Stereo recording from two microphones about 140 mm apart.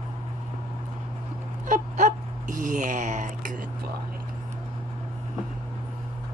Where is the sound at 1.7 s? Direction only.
65° right (ahead or behind).